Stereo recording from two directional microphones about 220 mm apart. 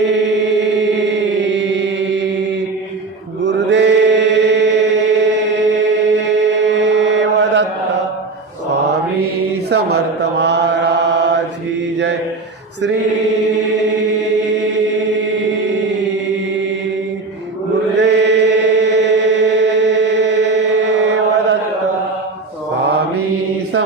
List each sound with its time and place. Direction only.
0.0 s chant: 55° right (ahead or behind)
3.4 s mantra: 55° right (ahead or behind)
9.6 s chant: 50° right (ahead or behind)
12.8 s mantra: 55° right (ahead or behind)
14.2 s chant: 55° right (ahead or behind)
18.0 s chant: 50° right (ahead or behind)